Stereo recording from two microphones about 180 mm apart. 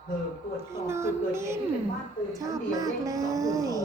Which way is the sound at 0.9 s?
15° right (ahead or behind).